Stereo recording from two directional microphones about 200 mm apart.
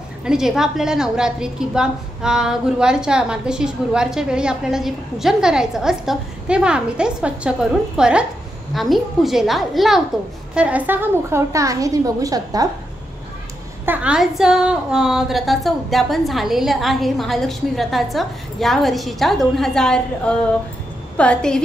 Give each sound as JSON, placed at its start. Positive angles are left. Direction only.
{"t": 0.2, "sound": "a woman's voice", "side_deg": -5}
{"t": 13.8, "sound": "a woman's voice", "side_deg": -5}